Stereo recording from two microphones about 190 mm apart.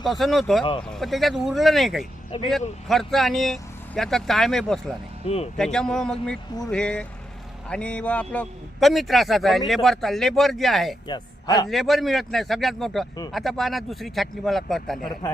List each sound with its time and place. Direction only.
0.0 s a man's voice: centre (ahead or behind)
5.2 s speech: 30° left (ahead or behind)
5.5 s a man's voice: 5° left (ahead or behind)
11.1 s a man's voice: 20° left (ahead or behind)
11.7 s a man's voice: centre (ahead or behind)